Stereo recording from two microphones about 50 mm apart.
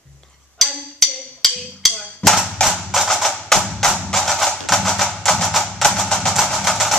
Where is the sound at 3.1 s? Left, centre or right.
Centre.